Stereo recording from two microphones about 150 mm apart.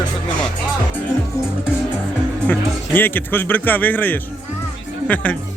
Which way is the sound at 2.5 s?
15° left (ahead or behind).